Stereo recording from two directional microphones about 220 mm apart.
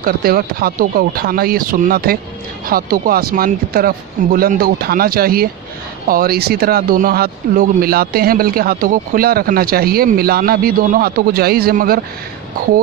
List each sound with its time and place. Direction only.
0.0 s speech: 40° right (ahead or behind)